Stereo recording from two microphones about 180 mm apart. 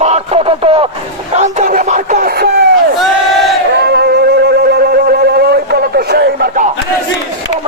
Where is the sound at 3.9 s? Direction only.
65° right (ahead or behind).